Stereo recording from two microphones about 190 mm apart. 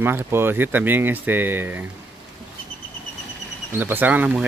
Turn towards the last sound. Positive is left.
turn(degrees=-10)  # may be behind; listen again after turning